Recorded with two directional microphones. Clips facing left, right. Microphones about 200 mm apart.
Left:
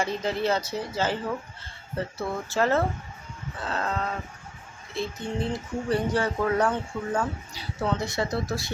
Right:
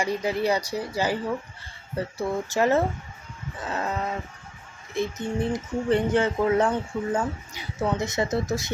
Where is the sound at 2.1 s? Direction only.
15° right (ahead or behind).